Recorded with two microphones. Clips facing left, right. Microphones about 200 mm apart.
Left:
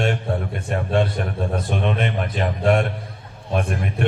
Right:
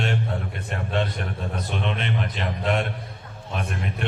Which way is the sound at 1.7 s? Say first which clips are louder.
Left 3 dB; 50° left (ahead or behind).